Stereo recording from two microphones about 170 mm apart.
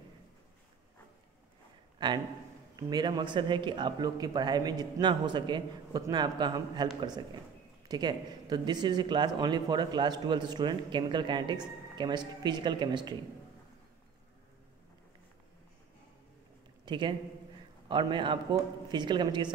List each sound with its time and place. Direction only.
2.0 s speech: 25° right (ahead or behind)
16.8 s a man's voice: 25° right (ahead or behind)